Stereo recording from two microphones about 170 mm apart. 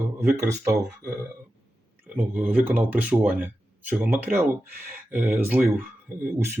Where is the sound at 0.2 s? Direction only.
15° right (ahead or behind).